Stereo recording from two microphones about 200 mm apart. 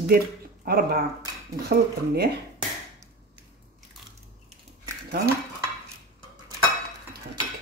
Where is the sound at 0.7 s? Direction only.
50° right (ahead or behind).